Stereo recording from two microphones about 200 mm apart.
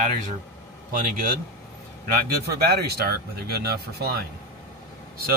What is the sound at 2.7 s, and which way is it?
Speech, 50° right (ahead or behind).